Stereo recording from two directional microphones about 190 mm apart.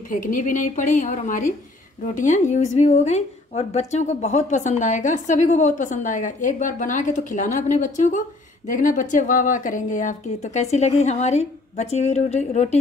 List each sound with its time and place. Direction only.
0.1 s a woman's voice: 45° left (ahead or behind)